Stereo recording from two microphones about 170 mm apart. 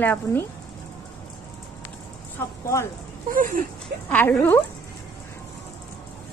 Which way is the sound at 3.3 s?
55° right (ahead or behind).